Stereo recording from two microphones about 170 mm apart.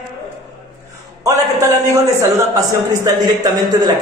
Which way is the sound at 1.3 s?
20° right (ahead or behind).